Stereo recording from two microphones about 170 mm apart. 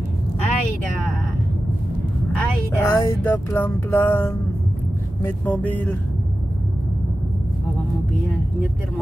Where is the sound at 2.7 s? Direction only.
15° left (ahead or behind).